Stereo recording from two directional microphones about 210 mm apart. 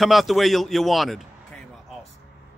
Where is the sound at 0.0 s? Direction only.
Centre (ahead or behind).